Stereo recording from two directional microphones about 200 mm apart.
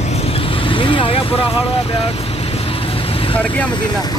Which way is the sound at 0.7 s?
25° left (ahead or behind).